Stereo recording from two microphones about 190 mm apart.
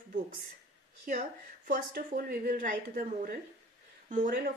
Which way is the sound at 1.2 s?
45° right (ahead or behind).